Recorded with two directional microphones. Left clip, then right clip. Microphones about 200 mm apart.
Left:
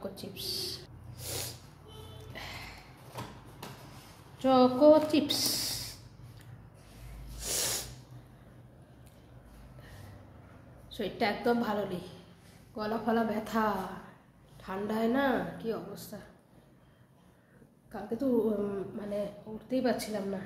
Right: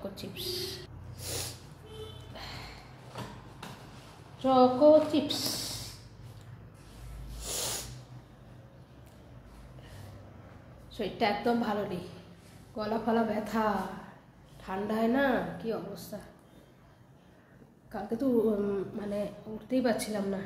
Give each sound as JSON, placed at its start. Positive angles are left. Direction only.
{"t": 0.2, "sound": "owl", "side_deg": 15}
{"t": 4.4, "sound": "a woman's voice", "side_deg": 30}
{"t": 7.3, "sound": "snort", "side_deg": 25}
{"t": 10.9, "sound": "a woman's voice", "side_deg": 10}
{"t": 17.9, "sound": "a woman's voice", "side_deg": 0}